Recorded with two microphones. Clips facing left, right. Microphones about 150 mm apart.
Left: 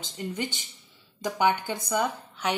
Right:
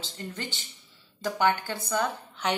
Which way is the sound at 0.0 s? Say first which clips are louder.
Left 5 dB; 15° left (ahead or behind).